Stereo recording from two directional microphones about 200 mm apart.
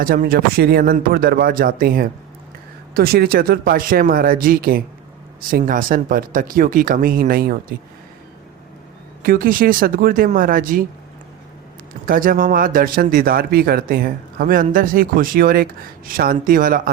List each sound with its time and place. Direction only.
0.0 s speech: 45° right (ahead or behind)
9.2 s speech: 45° right (ahead or behind)
12.0 s speech: 45° right (ahead or behind)